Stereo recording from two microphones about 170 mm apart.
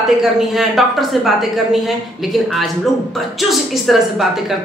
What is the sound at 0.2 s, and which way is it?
A woman's voice, centre (ahead or behind).